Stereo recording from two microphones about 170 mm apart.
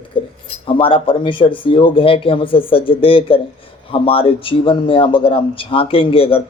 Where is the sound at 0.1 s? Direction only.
30° left (ahead or behind).